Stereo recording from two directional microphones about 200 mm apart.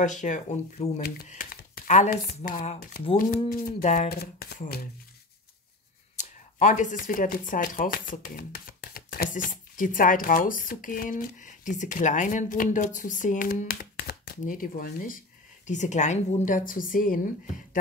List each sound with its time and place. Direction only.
0.0 s speech: 40° left (ahead or behind)
1.3 s speech: 45° left (ahead or behind)
4.2 s speech: 50° left (ahead or behind)
6.1 s speech: 40° left (ahead or behind)